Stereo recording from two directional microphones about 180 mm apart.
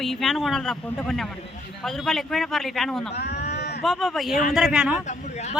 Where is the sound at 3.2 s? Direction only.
65° left (ahead or behind).